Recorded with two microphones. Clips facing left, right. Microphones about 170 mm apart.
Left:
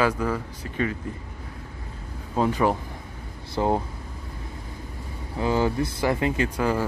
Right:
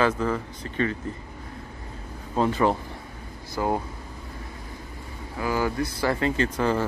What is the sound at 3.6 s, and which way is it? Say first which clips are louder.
Speech: left 2 dB; 25° left (ahead or behind).